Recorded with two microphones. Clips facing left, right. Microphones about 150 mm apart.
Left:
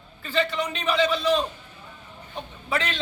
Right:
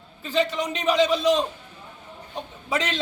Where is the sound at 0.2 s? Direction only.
15° right (ahead or behind).